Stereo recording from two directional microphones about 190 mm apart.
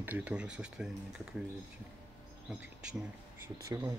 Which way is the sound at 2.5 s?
5° right (ahead or behind).